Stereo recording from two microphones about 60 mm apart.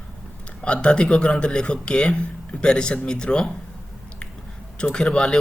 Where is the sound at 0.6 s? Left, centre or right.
Centre.